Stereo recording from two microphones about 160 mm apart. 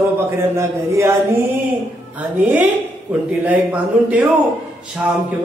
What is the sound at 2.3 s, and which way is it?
Speech, 10° right (ahead or behind).